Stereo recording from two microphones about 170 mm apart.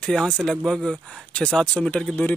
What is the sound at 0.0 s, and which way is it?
Speech, 5° left (ahead or behind).